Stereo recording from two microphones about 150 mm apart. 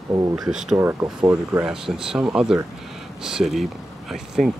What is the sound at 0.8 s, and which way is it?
Speech, 15° right (ahead or behind).